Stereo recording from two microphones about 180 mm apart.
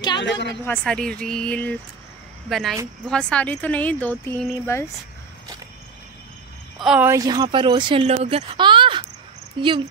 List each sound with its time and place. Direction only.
0.2 s a woman's voice: 75° left (ahead or behind)
0.7 s speech: 5° left (ahead or behind)
6.8 s speech: 5° right (ahead or behind)
7.1 s speech: 20° right (ahead or behind)